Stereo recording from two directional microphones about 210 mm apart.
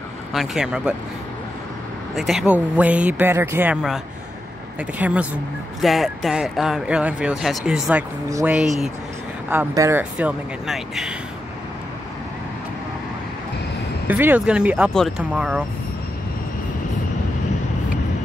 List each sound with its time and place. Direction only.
0.3 s speech: centre (ahead or behind)
2.1 s speech: centre (ahead or behind)
8.3 s speech: 15° right (ahead or behind)
8.5 s speech: centre (ahead or behind)
9.5 s speech: 10° right (ahead or behind)
14.0 s speech: 10° right (ahead or behind)